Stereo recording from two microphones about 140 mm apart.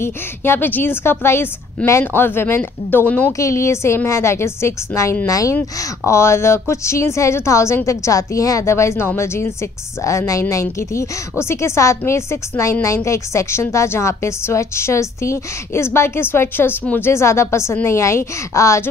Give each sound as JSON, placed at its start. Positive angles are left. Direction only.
{"t": 0.0, "sound": "a woman's voice", "side_deg": 15}